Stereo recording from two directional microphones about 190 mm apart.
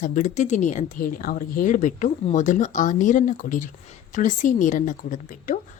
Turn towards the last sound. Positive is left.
turn(degrees=45)  # may be behind; listen again after turning